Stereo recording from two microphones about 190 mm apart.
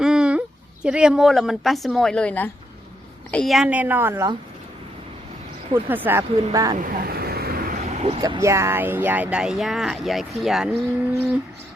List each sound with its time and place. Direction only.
0.0 s speech: 5° right (ahead or behind)
5.7 s speech: 10° right (ahead or behind)
6.7 s vehicle: 45° right (ahead or behind)
7.9 s a sound: 35° right (ahead or behind)
8.2 s speech: 15° right (ahead or behind); by 10.8 s centre (ahead or behind)